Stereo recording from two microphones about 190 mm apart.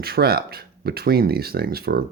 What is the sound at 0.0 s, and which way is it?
Speech, 55° right (ahead or behind).